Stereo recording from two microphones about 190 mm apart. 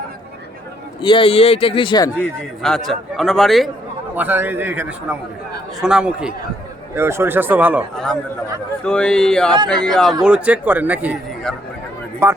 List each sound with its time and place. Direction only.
1.0 s speech: 25° left (ahead or behind)
2.1 s a man's voice: 5° left (ahead or behind)
7.9 s a man's voice: 5° left (ahead or behind)
12.2 s a man's voice: 15° right (ahead or behind)